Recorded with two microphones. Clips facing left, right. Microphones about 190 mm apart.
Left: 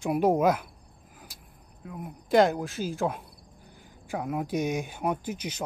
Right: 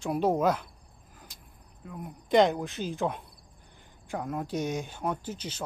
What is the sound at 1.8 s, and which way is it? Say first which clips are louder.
Speech: left 2 dB; 5° left (ahead or behind).